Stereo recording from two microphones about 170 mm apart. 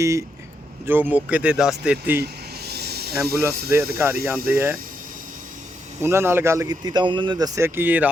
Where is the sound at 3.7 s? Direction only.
15° right (ahead or behind).